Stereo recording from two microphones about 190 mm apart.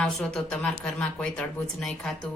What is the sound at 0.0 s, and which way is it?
A woman's voice, 5° left (ahead or behind).